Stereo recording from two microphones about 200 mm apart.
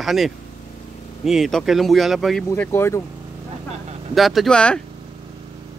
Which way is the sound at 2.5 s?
10° left (ahead or behind).